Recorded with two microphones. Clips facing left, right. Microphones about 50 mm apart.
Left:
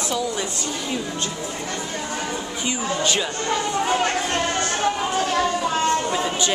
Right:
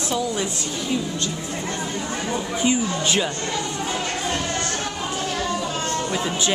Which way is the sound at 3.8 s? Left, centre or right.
Left.